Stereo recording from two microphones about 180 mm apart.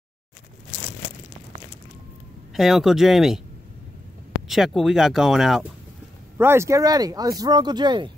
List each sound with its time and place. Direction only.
2.5 s speech: centre (ahead or behind)
4.5 s speech: centre (ahead or behind)
6.3 s speech: 15° right (ahead or behind)